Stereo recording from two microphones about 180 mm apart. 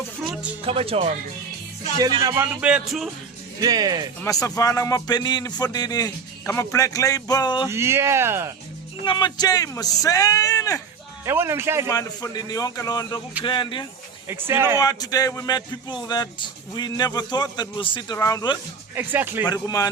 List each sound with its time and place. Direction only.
0.6 s speech: 30° right (ahead or behind)
2.0 s speech: 20° right (ahead or behind); by 3.1 s 5° right (ahead or behind)
3.6 s speech: 20° right (ahead or behind)
4.2 s speech: 20° left (ahead or behind)
7.7 s speech: 15° right (ahead or behind)
9.0 s speech: 25° left (ahead or behind)
11.3 s speech: 15° right (ahead or behind)
11.9 s speech: 20° left (ahead or behind)
14.3 s speech: 10° right (ahead or behind)
14.8 s speech: 20° left (ahead or behind)
18.9 s speech: 10° right (ahead or behind)
19.5 s speech: 20° left (ahead or behind)